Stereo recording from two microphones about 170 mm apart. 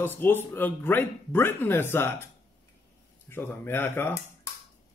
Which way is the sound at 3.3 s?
15° left (ahead or behind).